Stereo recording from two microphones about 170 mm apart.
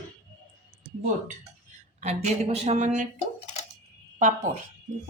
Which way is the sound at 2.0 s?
40° right (ahead or behind).